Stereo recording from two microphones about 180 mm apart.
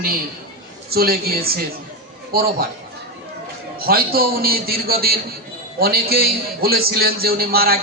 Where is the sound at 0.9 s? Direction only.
55° right (ahead or behind).